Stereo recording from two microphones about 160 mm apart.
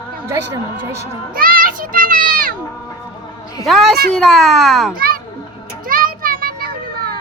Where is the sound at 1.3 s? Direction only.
65° right (ahead or behind).